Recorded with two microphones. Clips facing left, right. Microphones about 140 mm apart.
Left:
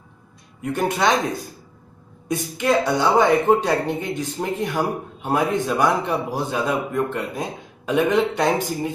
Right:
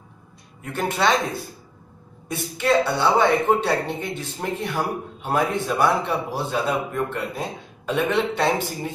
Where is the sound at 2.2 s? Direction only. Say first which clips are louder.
Left 1 dB; 15° left (ahead or behind).